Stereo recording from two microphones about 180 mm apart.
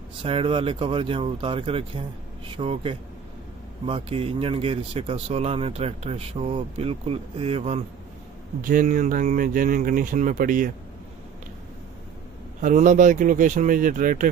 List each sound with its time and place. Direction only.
0.2 s speech: 30° right (ahead or behind)
8.6 s speech: 50° right (ahead or behind)
12.6 s speech: 45° right (ahead or behind)